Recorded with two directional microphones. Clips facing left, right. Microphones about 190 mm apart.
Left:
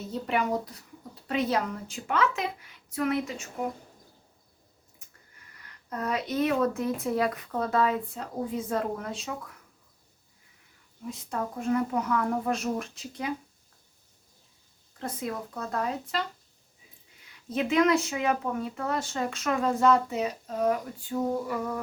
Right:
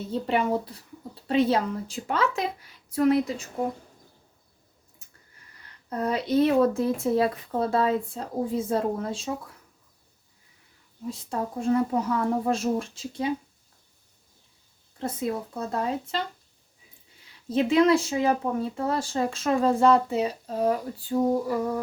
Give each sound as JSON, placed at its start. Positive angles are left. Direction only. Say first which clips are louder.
{"t": 0.1, "sound": "speech", "louder": "right 3 dB", "side_deg": -30}
{"t": 5.9, "sound": "speech", "louder": "right 5 dB", "side_deg": -30}
{"t": 11.1, "sound": "speech", "louder": "right 2 dB", "side_deg": -30}
{"t": 14.9, "sound": "speech", "louder": "right 5 dB", "side_deg": -25}
{"t": 17.5, "sound": "speech", "louder": "right 4 dB", "side_deg": -30}